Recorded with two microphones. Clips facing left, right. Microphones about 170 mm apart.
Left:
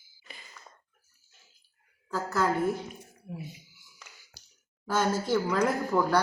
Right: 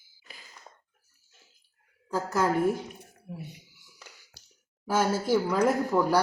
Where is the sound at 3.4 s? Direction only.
65° right (ahead or behind).